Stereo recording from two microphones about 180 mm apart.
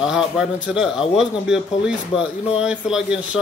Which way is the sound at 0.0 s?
5° right (ahead or behind).